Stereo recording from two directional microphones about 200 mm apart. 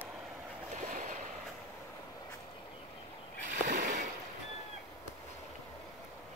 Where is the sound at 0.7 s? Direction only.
40° right (ahead or behind).